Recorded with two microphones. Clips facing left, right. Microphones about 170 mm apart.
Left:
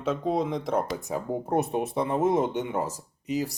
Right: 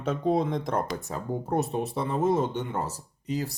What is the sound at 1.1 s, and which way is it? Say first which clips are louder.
Speech: left 2 dB; 15° left (ahead or behind).